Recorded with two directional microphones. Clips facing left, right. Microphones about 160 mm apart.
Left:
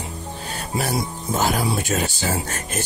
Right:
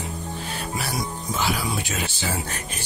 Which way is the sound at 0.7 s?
25° left (ahead or behind).